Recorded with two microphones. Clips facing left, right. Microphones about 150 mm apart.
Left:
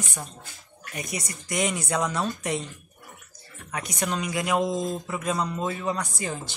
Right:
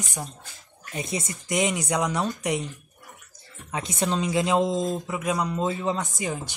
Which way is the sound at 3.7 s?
25° right (ahead or behind).